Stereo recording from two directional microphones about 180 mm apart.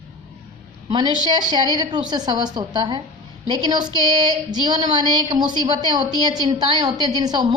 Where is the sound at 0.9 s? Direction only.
25° right (ahead or behind).